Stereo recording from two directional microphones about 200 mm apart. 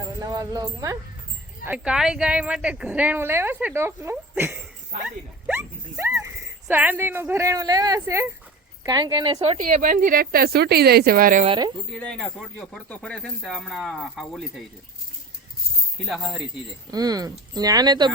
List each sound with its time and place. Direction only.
0.3 s speech: 20° right (ahead or behind)
1.6 s a woman's voice: 5° right (ahead or behind); by 11.4 s 45° right (ahead or behind)
11.4 s speech: 20° right (ahead or behind)
11.9 s speech: 5° left (ahead or behind)
16.0 s speech: centre (ahead or behind)
16.9 s speech: 20° right (ahead or behind)